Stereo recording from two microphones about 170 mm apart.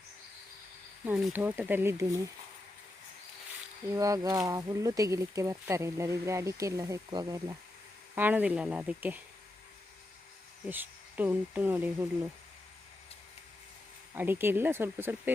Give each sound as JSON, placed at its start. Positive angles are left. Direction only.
{"t": 1.0, "sound": "speech", "side_deg": -10}
{"t": 3.9, "sound": "speech", "side_deg": -20}
{"t": 8.1, "sound": "speech", "side_deg": -10}
{"t": 10.7, "sound": "speech", "side_deg": -10}
{"t": 14.1, "sound": "speech", "side_deg": -10}